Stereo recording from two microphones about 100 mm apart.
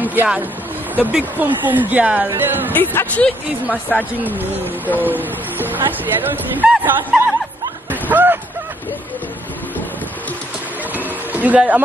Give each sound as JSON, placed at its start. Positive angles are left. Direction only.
{"t": 0.0, "sound": "speech", "side_deg": -15}
{"t": 2.7, "sound": "speech", "side_deg": 20}
{"t": 4.2, "sound": "speech", "side_deg": -20}
{"t": 7.1, "sound": "speech", "side_deg": -5}
{"t": 8.1, "sound": "a sound", "side_deg": -20}
{"t": 11.3, "sound": "speech", "side_deg": -15}